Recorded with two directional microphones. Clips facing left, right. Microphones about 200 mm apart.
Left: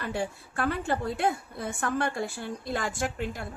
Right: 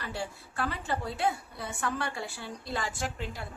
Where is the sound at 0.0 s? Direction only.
50° left (ahead or behind).